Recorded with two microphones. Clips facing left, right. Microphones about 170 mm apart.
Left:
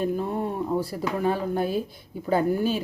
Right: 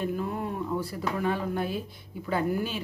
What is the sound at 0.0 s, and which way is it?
A woman's voice, 30° left (ahead or behind).